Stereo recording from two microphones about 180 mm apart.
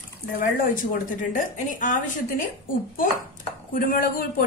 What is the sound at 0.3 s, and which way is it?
A woman's voice, 50° left (ahead or behind).